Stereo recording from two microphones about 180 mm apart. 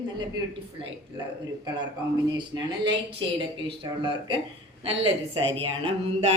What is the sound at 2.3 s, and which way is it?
A woman's voice, 25° right (ahead or behind).